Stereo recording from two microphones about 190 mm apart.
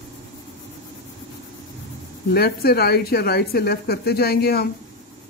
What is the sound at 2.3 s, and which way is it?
A woman's voice, 55° left (ahead or behind).